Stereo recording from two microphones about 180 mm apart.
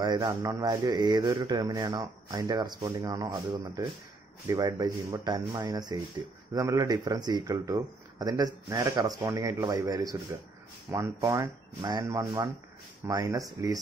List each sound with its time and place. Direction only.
0.0 s speech: 25° right (ahead or behind)